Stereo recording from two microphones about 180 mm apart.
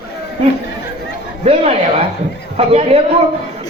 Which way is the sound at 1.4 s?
30° right (ahead or behind).